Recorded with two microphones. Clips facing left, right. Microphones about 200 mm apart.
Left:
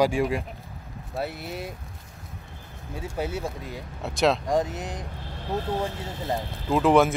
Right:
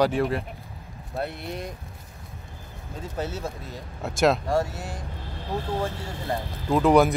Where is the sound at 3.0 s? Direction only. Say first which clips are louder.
Left 1 dB; 10° left (ahead or behind).